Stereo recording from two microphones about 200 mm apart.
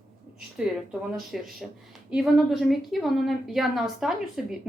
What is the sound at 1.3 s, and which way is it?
A woman's voice, centre (ahead or behind).